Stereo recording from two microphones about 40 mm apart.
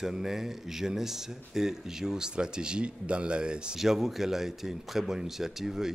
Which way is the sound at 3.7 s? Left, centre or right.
Centre.